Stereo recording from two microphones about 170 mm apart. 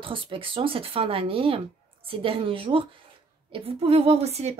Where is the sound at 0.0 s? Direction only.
30° right (ahead or behind).